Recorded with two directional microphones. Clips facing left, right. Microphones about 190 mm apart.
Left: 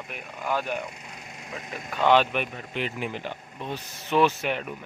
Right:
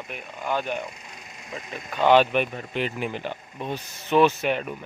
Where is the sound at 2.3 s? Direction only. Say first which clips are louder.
Right 5 dB; 40° right (ahead or behind).